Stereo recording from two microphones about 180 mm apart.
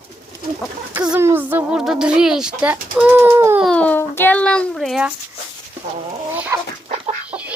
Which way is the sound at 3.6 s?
5° left (ahead or behind).